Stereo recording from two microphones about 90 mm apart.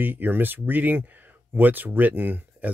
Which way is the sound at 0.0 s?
20° right (ahead or behind).